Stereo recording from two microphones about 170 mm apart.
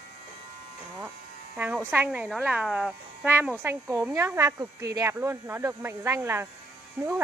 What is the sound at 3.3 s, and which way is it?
Speech, 15° right (ahead or behind).